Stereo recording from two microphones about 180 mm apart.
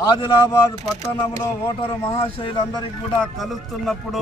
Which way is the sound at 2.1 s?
30° left (ahead or behind).